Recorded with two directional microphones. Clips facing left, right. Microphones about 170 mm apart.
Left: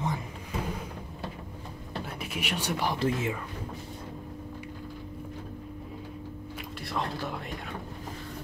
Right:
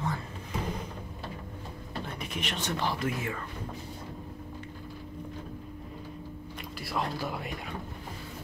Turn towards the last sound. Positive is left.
turn(degrees=-5)  # may be behind; listen again after turning